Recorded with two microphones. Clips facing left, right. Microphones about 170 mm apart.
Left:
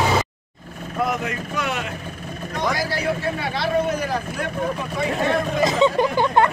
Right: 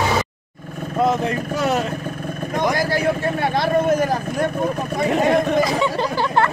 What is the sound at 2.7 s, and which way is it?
Vehicle, 50° right (ahead or behind).